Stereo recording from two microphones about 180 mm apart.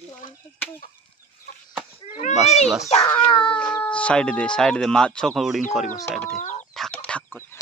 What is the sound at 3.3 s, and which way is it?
Dog, 25° left (ahead or behind).